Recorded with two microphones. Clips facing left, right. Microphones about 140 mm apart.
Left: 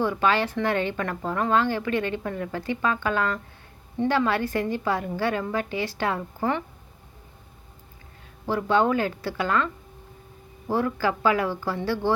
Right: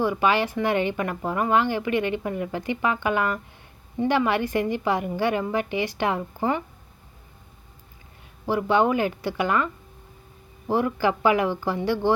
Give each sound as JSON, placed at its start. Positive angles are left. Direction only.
{"t": 0.0, "sound": "speech", "side_deg": -10}
{"t": 8.4, "sound": "speech", "side_deg": -15}
{"t": 10.7, "sound": "speech", "side_deg": -15}